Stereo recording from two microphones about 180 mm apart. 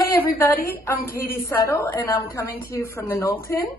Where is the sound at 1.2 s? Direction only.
55° left (ahead or behind).